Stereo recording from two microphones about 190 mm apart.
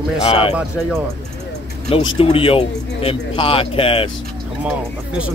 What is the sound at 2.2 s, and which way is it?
Speech, 30° left (ahead or behind).